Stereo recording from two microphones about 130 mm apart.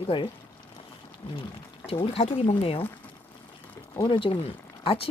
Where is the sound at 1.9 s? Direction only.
50° left (ahead or behind).